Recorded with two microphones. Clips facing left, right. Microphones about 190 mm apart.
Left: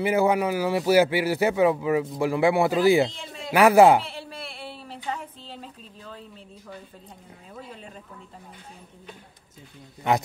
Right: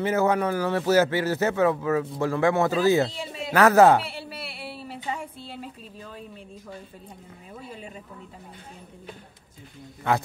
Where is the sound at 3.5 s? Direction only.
10° left (ahead or behind).